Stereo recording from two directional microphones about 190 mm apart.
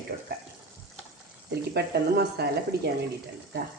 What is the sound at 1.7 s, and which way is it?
Speech, 60° right (ahead or behind).